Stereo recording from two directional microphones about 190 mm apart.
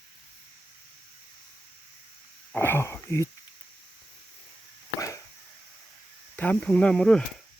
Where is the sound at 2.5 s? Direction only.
10° left (ahead or behind).